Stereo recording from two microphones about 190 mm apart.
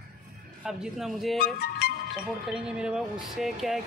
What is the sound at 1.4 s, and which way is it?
Speech, 55° left (ahead or behind).